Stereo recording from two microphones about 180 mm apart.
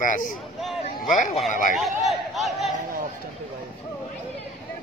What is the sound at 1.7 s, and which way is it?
Speech, centre (ahead or behind).